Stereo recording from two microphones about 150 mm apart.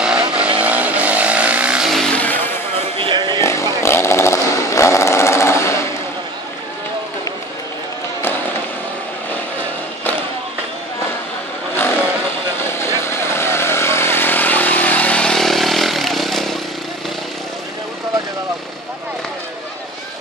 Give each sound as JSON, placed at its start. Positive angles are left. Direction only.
{"t": 0.0, "sound": "vehicle", "side_deg": -5}
{"t": 3.0, "sound": "vehicle", "side_deg": -30}
{"t": 3.3, "sound": "vehicle", "side_deg": 20}
{"t": 3.8, "sound": "chainsaw", "side_deg": 15}
{"t": 12.5, "sound": "vehicle", "side_deg": 15}